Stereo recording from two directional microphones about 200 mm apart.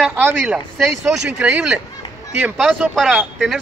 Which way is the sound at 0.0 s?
10° right (ahead or behind).